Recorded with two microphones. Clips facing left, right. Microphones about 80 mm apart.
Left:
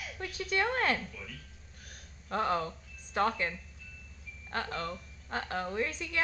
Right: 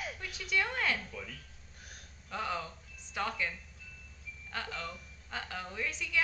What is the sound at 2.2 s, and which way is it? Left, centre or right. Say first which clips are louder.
A woman's voice: left 6 dB; left.